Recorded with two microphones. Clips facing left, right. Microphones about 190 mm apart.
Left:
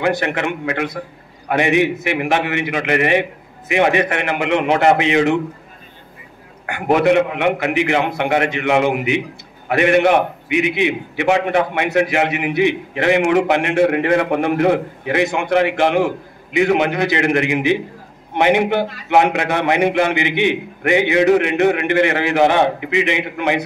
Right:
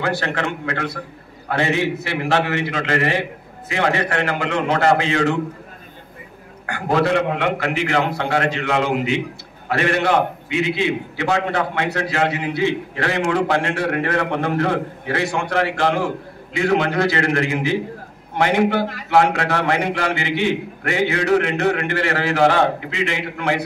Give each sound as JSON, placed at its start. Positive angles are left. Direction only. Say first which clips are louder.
{"t": 0.0, "sound": "a man's voice", "louder": "left 4 dB", "side_deg": 15}
{"t": 6.6, "sound": "a man's voice", "louder": "left 4 dB", "side_deg": 20}